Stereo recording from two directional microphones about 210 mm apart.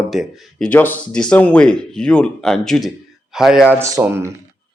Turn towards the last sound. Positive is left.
turn(degrees=-15)  # may be behind; listen again after turning